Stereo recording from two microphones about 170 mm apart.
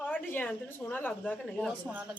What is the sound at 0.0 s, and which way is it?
A woman's voice, 10° left (ahead or behind).